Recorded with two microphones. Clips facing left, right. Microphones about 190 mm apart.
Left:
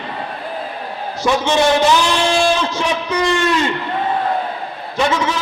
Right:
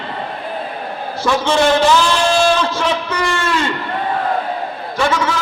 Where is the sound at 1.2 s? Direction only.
15° left (ahead or behind).